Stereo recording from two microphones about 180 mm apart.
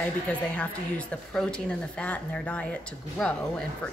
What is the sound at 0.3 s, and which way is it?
A woman's voice, 5° left (ahead or behind).